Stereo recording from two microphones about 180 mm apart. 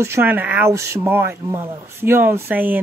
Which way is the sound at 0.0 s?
10° right (ahead or behind).